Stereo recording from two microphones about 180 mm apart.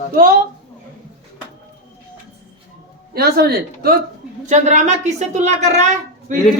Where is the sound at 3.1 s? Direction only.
60° right (ahead or behind).